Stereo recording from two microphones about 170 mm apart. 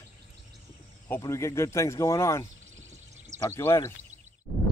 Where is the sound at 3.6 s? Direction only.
15° left (ahead or behind).